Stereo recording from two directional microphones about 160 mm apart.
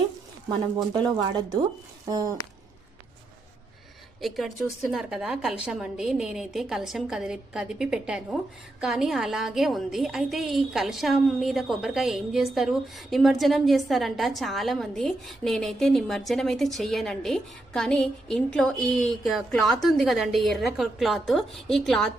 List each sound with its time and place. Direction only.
2.0 s speech: 25° right (ahead or behind)
4.2 s a woman's voice: centre (ahead or behind)